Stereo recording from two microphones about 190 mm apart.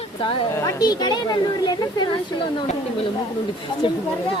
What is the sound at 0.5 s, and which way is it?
Speech, 15° left (ahead or behind).